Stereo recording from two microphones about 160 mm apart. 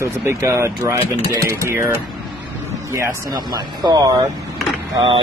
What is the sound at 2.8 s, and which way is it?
Speech, 20° right (ahead or behind).